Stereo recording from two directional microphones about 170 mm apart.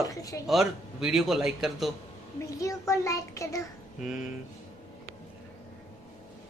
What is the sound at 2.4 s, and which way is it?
A child's voice, 20° left (ahead or behind).